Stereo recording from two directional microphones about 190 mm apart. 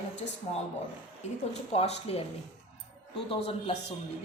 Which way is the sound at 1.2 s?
35° left (ahead or behind).